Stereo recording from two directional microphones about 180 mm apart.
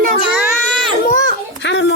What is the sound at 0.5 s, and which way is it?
Baby cry, 5° left (ahead or behind).